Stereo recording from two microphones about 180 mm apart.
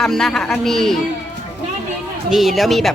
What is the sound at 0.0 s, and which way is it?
Speech, centre (ahead or behind).